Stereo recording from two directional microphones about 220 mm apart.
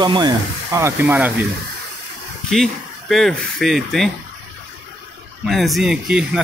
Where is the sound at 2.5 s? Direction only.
Centre (ahead or behind).